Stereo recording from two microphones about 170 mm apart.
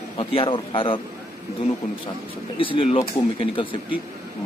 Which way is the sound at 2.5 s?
30° left (ahead or behind).